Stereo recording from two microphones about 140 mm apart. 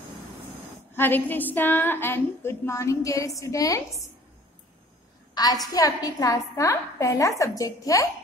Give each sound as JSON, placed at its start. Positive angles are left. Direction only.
{"t": 0.9, "sound": "a woman's voice", "side_deg": 15}
{"t": 5.3, "sound": "a woman's voice", "side_deg": 25}